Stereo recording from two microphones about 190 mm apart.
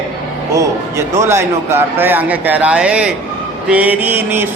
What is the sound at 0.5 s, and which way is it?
A man's voice, 15° right (ahead or behind).